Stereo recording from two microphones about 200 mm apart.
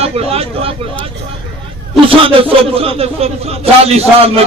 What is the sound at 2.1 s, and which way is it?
A man's voice, 30° right (ahead or behind).